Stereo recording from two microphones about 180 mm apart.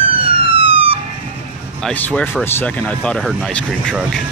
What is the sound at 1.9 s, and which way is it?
Speech, 5° left (ahead or behind).